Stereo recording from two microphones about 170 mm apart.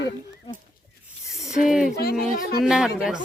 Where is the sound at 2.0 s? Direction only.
65° left (ahead or behind).